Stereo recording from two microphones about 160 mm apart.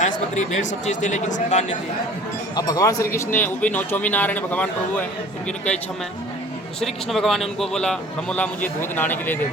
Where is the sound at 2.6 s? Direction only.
20° left (ahead or behind).